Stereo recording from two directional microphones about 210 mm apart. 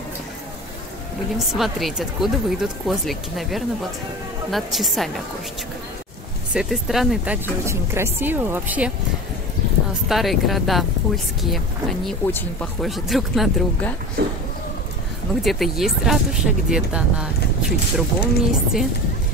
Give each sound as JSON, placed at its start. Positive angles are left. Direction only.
{"t": 1.5, "sound": "speech", "side_deg": 0}
{"t": 6.5, "sound": "speech", "side_deg": 0}
{"t": 10.0, "sound": "speech", "side_deg": 0}
{"t": 14.2, "sound": "a sound", "side_deg": -50}
{"t": 15.4, "sound": "speech", "side_deg": 0}